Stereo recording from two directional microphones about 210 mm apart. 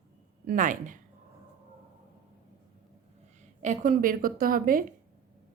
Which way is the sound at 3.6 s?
40° right (ahead or behind).